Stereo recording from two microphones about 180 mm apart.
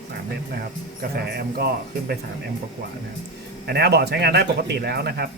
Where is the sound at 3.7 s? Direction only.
65° right (ahead or behind).